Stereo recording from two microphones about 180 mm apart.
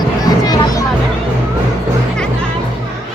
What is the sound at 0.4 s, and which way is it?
Music, 20° left (ahead or behind).